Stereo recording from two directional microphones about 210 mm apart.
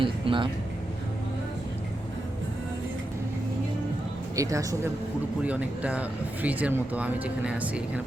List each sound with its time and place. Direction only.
0.0 s speech: 25° right (ahead or behind)
4.4 s speech: 15° right (ahead or behind)